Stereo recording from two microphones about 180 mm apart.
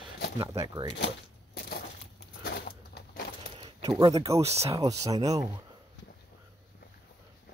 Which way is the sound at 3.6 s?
25° right (ahead or behind).